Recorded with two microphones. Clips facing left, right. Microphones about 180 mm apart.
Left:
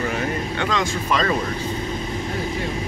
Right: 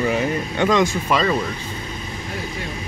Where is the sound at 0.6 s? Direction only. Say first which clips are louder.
Right 8 dB; 15° right (ahead or behind).